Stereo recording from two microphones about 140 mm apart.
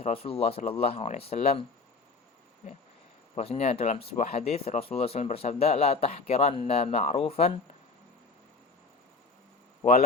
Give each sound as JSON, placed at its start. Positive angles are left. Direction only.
{"t": 0.0, "sound": "speech", "side_deg": 45}
{"t": 3.3, "sound": "speech", "side_deg": 50}